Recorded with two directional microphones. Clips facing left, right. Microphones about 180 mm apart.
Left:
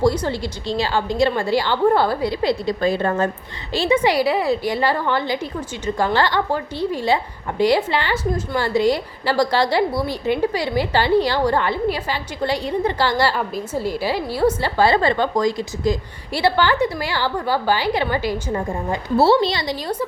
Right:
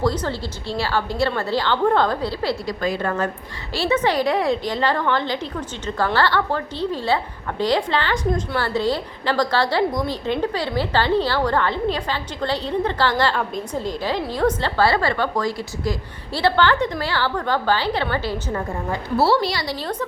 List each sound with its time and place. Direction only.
0.0 s a woman's voice: 10° left (ahead or behind); by 3.2 s 25° left (ahead or behind)
3.7 s a woman's voice: 15° left (ahead or behind)